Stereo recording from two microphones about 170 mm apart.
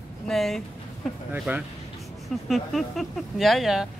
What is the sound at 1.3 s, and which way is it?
Speech, 10° right (ahead or behind).